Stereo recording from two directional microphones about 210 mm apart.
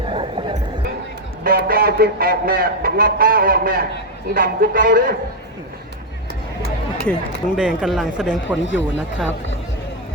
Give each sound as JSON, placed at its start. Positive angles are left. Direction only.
{"t": 0.1, "sound": "music", "side_deg": -25}
{"t": 1.5, "sound": "a man's voice", "side_deg": -45}
{"t": 7.0, "sound": "speech", "side_deg": 0}